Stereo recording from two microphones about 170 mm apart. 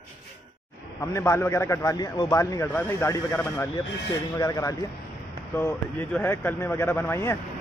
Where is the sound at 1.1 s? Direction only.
15° left (ahead or behind).